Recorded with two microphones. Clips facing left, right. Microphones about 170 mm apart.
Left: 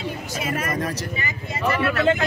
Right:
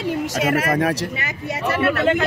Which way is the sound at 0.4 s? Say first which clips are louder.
Right 6 dB; 80° right.